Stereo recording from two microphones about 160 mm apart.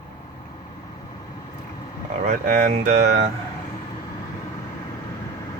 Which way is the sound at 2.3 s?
50° right (ahead or behind).